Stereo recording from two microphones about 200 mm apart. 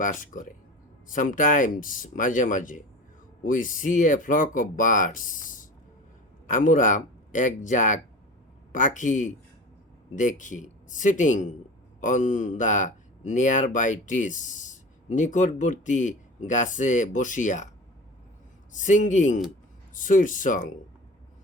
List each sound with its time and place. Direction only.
0.0 s a man's voice: 40° left (ahead or behind)
18.7 s a man's voice: 40° left (ahead or behind)